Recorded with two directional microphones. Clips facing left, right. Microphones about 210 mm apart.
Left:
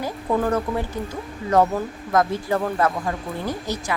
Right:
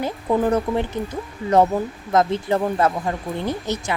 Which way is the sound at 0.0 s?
20° right (ahead or behind).